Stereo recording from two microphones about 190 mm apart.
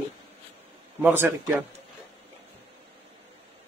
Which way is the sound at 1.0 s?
10° right (ahead or behind).